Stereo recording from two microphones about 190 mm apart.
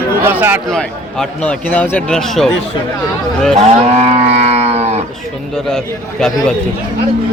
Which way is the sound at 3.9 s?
35° right (ahead or behind).